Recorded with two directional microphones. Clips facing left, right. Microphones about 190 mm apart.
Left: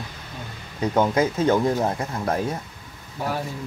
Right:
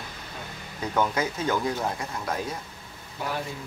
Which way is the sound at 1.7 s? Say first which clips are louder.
Left 6 dB; 45° left (ahead or behind).